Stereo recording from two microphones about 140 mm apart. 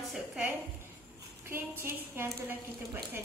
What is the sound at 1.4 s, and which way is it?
A woman's voice, 15° right (ahead or behind).